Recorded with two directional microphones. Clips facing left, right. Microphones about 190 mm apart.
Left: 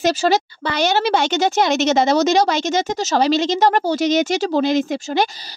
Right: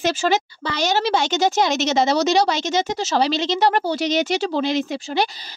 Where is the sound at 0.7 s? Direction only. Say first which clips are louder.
Left 3 dB; 60° left (ahead or behind).